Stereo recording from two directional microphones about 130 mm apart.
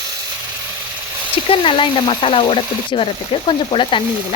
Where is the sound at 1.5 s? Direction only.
40° left (ahead or behind).